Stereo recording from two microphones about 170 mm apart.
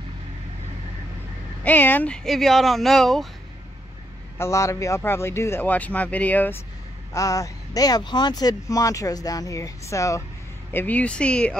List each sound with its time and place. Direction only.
1.6 s speech: 10° left (ahead or behind)
4.4 s a man's voice: 15° left (ahead or behind)